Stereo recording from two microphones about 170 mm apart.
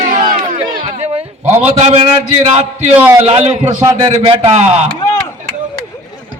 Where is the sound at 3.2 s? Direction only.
35° right (ahead or behind).